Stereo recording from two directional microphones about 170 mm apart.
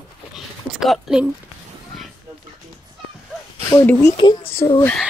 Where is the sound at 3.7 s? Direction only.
15° left (ahead or behind).